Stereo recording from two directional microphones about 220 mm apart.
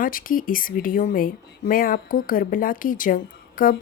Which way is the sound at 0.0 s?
40° left (ahead or behind).